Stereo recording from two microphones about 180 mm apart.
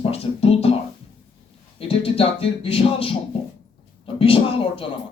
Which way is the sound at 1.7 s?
30° left (ahead or behind).